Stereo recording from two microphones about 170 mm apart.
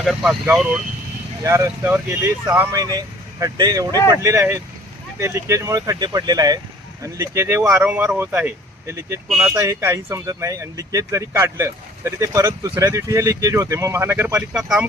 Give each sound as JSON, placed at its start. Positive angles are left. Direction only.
{"t": 0.0, "sound": "speech", "side_deg": 0}
{"t": 1.5, "sound": "speech", "side_deg": -15}